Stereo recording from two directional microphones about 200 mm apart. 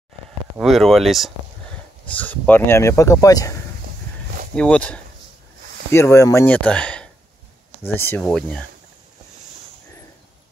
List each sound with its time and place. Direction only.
0.6 s speech: centre (ahead or behind); by 3.5 s 15° left (ahead or behind)
4.6 s speech: 5° left (ahead or behind)